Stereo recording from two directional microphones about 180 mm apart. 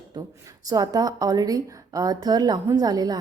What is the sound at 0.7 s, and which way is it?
A woman's voice, 20° right (ahead or behind).